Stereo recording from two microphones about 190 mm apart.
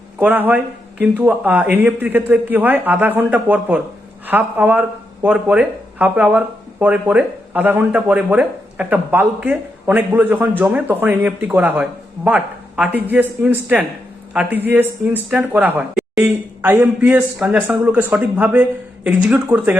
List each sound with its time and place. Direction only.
0.2 s speech: 10° right (ahead or behind)